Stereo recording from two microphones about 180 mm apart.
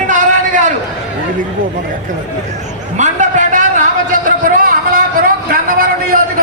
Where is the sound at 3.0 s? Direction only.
45° right (ahead or behind).